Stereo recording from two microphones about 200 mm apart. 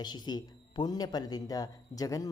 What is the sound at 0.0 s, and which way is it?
Speech, 20° left (ahead or behind).